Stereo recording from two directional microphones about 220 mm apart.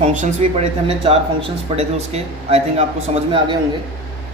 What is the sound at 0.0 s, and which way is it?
Speech, 30° right (ahead or behind).